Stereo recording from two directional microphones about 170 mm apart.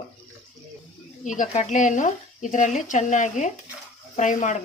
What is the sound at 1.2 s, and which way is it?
Speech, 50° left (ahead or behind).